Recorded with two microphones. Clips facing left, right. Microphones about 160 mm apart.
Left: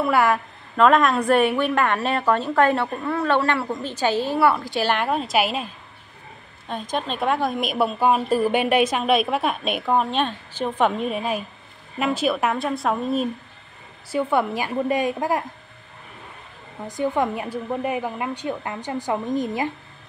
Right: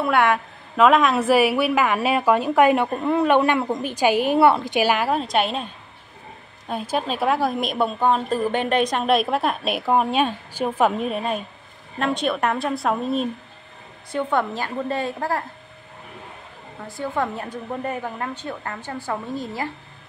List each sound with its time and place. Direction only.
0.0 s a woman's voice: centre (ahead or behind); by 4.9 s 15° right (ahead or behind)
4.9 s a woman's voice: centre (ahead or behind)
6.7 s a woman's voice: 5° right (ahead or behind); by 15.4 s 15° left (ahead or behind)
16.8 s a woman's voice: 15° left (ahead or behind)